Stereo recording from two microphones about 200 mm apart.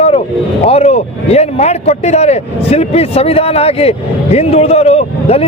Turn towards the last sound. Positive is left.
turn(degrees=30)  # may be behind; listen again after turning